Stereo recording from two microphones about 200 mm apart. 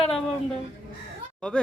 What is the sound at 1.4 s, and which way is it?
Speech, 5° left (ahead or behind).